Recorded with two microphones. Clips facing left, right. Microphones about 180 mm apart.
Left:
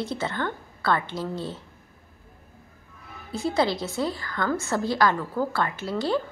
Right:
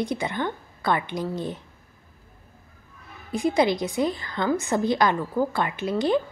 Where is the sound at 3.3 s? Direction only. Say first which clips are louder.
Right 3 dB; 15° right (ahead or behind).